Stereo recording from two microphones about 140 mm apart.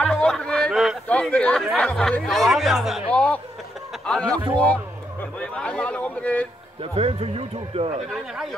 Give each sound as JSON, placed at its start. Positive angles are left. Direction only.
{"t": 0.0, "sound": "a sound", "side_deg": 5}
{"t": 1.0, "sound": "speech", "side_deg": 10}
{"t": 3.1, "sound": "speech", "side_deg": 10}
{"t": 5.4, "sound": "speech", "side_deg": 10}
{"t": 6.8, "sound": "speech", "side_deg": -45}